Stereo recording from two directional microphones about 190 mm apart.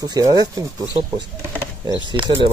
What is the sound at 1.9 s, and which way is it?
Speech, 25° right (ahead or behind).